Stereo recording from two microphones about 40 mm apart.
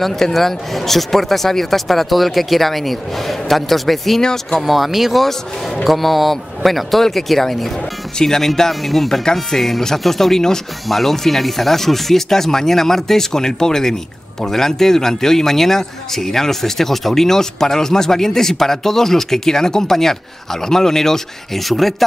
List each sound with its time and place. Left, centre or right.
0.0 s speech: centre
4.2 s a man's voice: centre
4.6 s a man's voice: centre